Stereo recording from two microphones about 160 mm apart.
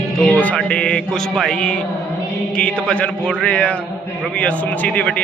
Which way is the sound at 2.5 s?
5° left (ahead or behind).